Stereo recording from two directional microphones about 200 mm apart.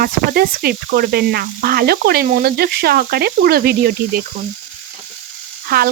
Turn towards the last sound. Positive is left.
turn(degrees=-50)  # may be behind; listen again after turning